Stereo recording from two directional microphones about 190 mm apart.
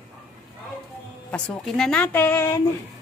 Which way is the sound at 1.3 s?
5° left (ahead or behind).